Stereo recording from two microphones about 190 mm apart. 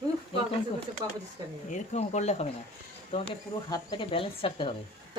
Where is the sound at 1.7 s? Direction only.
35° left (ahead or behind).